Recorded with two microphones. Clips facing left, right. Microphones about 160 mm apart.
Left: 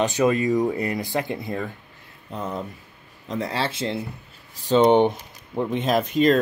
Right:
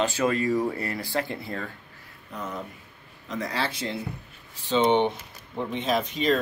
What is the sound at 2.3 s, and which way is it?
Speech, 30° left (ahead or behind).